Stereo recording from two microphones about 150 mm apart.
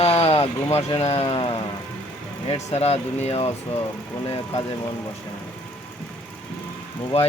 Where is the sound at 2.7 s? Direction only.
45° left (ahead or behind).